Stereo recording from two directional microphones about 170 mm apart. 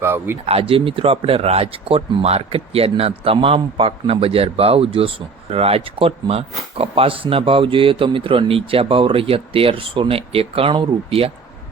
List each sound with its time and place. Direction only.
0.0 s speech: 15° right (ahead or behind)
0.4 s speech: 35° right (ahead or behind)